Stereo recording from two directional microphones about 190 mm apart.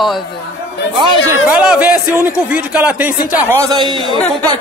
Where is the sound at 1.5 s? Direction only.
5° right (ahead or behind); by 4.1 s 25° right (ahead or behind).